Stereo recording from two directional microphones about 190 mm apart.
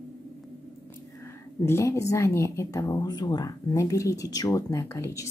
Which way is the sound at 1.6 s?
15° left (ahead or behind).